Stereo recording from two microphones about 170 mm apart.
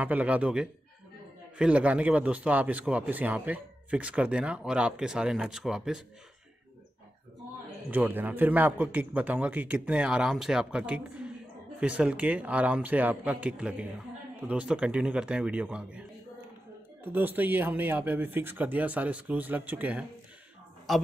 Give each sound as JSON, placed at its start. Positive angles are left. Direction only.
{"t": 0.0, "sound": "a man's voice", "side_deg": -10}
{"t": 7.9, "sound": "a man's voice", "side_deg": -10}